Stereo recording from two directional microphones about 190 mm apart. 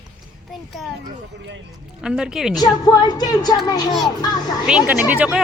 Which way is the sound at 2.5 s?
20° left (ahead or behind).